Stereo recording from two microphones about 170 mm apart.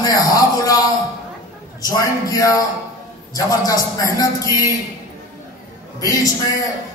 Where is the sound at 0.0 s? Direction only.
20° left (ahead or behind).